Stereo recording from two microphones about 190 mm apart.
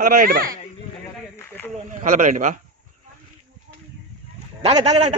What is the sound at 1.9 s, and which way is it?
Speech, 45° right (ahead or behind).